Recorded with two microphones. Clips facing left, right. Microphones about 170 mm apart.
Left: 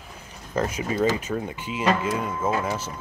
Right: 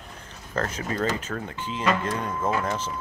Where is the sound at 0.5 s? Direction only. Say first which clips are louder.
Left 3 dB; 10° left (ahead or behind).